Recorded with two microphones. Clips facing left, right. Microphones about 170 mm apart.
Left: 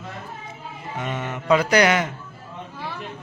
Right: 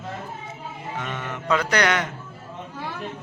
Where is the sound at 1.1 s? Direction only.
25° left (ahead or behind).